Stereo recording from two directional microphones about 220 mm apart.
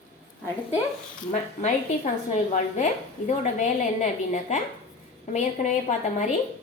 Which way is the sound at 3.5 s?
35° left (ahead or behind).